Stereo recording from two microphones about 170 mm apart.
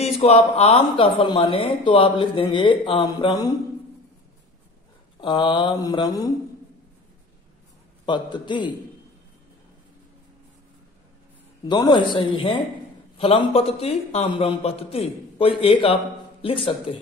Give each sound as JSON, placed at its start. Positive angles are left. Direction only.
{"t": 0.0, "sound": "speech", "side_deg": 40}
{"t": 5.2, "sound": "speech", "side_deg": 30}
{"t": 8.0, "sound": "speech", "side_deg": 25}
{"t": 11.6, "sound": "a man's voice", "side_deg": 25}